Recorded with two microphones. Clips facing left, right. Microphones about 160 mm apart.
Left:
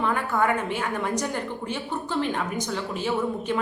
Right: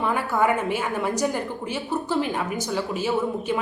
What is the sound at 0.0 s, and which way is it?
A woman's voice, 10° right (ahead or behind).